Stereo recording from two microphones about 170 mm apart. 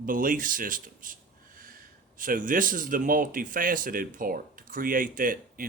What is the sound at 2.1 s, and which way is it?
A man's voice, 55° right (ahead or behind).